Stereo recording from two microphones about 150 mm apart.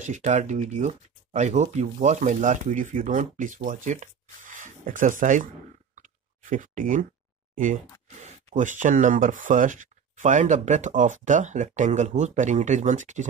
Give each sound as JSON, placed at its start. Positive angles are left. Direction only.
{"t": 0.0, "sound": "speech", "side_deg": -55}
{"t": 5.9, "sound": "clicking", "side_deg": -60}
{"t": 7.5, "sound": "speech", "side_deg": -60}